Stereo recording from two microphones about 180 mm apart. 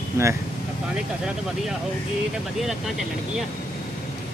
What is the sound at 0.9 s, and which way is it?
A man's voice, 5° right (ahead or behind).